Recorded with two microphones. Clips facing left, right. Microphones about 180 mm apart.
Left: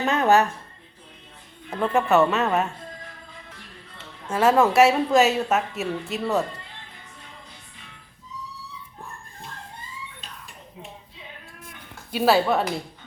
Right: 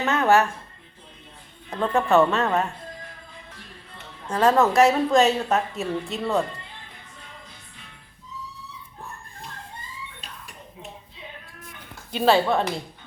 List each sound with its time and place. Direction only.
0.0 s a sound: 15° left (ahead or behind)
1.7 s a woman's voice: 10° left (ahead or behind)
4.3 s a woman's voice: 5° left (ahead or behind)
12.1 s a woman's voice: 5° left (ahead or behind)